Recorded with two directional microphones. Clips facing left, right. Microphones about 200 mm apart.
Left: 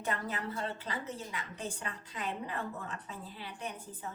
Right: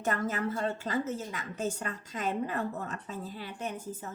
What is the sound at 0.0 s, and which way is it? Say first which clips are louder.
A woman's voice: right 6 dB; 45° right (ahead or behind).